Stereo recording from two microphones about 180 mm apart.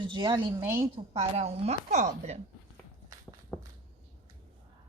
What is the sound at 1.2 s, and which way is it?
A woman's voice, 35° right (ahead or behind).